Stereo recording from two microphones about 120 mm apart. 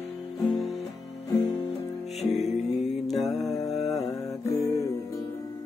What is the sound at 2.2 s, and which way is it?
Music, centre (ahead or behind).